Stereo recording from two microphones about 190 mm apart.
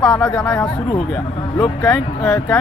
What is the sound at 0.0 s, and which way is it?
Speech, 5° left (ahead or behind).